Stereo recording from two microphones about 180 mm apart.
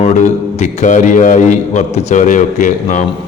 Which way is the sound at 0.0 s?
40° left (ahead or behind).